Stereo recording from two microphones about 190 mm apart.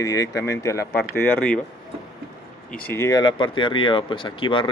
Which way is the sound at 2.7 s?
10° left (ahead or behind).